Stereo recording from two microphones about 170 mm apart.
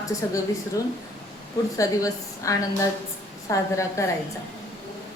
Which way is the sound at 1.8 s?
20° left (ahead or behind).